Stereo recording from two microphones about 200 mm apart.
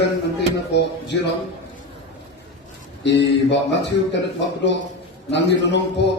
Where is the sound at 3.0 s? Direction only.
60° left (ahead or behind).